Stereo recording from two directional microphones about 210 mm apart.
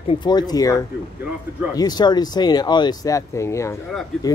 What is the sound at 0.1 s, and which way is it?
Speech, 20° left (ahead or behind).